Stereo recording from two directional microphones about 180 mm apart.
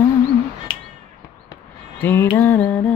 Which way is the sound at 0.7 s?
30° left (ahead or behind).